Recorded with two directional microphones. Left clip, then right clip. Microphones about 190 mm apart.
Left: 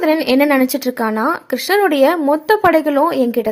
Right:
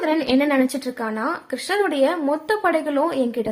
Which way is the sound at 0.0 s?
35° left (ahead or behind).